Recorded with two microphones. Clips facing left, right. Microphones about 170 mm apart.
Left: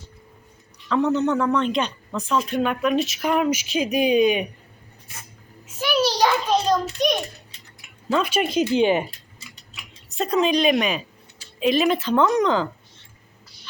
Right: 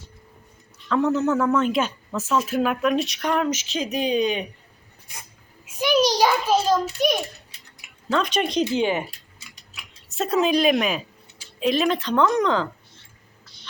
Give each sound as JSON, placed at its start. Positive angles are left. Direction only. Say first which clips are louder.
{"t": 0.9, "sound": "a man's voice", "louder": "even", "side_deg": 0}
{"t": 5.1, "sound": "writing", "louder": "even", "side_deg": -15}
{"t": 5.6, "sound": "a sound", "louder": "right 2 dB", "side_deg": -15}
{"t": 8.1, "sound": "speech", "louder": "left 1 dB", "side_deg": 5}
{"t": 8.7, "sound": "speech", "louder": "left 4 dB", "side_deg": 20}
{"t": 9.4, "sound": "scissors", "louder": "left 2 dB", "side_deg": 0}
{"t": 11.6, "sound": "a man's voice", "louder": "left 2 dB", "side_deg": 5}